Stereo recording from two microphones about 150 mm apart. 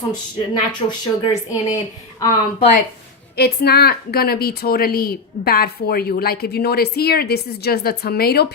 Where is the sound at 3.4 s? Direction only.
90° left.